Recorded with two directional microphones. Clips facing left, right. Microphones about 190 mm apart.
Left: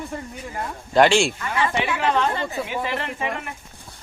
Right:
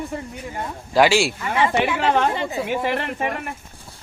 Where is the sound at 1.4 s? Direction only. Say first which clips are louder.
Right 4 dB; 20° right (ahead or behind).